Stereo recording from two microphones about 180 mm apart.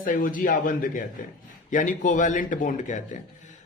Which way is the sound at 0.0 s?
50° left (ahead or behind).